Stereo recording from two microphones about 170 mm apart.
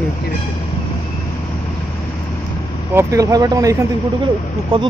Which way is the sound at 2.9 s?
20° right (ahead or behind).